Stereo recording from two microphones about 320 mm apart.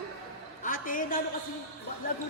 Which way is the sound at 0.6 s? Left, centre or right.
Left.